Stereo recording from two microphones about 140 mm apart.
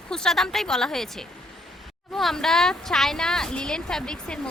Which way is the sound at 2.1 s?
5° left (ahead or behind).